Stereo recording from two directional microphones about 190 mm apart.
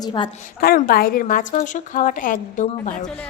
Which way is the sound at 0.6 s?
50° left (ahead or behind).